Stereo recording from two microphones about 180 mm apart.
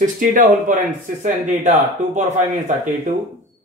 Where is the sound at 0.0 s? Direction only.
50° right (ahead or behind).